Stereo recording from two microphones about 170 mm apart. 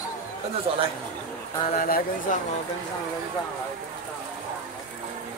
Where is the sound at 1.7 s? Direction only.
55° left (ahead or behind).